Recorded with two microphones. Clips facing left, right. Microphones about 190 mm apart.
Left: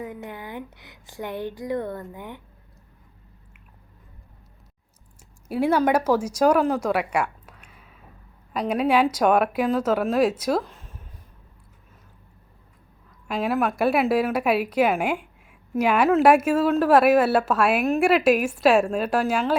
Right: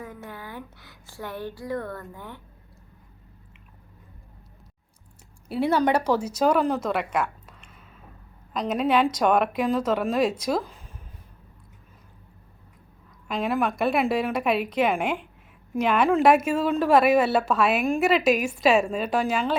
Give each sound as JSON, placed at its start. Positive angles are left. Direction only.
{"t": 0.0, "sound": "speech", "side_deg": 20}
{"t": 5.5, "sound": "a woman's voice", "side_deg": 10}
{"t": 13.2, "sound": "a woman's voice", "side_deg": 5}